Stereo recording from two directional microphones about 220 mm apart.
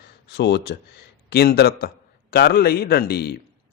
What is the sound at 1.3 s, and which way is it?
Speech, 45° left (ahead or behind).